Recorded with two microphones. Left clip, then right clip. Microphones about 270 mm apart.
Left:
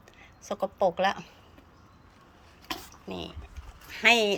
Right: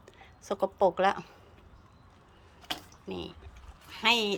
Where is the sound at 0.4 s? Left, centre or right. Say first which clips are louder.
Even; centre.